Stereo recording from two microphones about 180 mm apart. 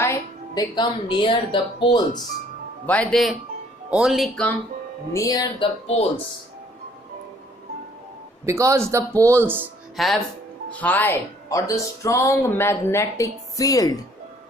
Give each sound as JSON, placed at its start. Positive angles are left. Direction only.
{"t": 0.0, "sound": "speech", "side_deg": 20}
{"t": 2.8, "sound": "speech", "side_deg": 5}
{"t": 5.1, "sound": "speech", "side_deg": 20}
{"t": 8.4, "sound": "speech", "side_deg": -15}
{"t": 10.0, "sound": "speech", "side_deg": 0}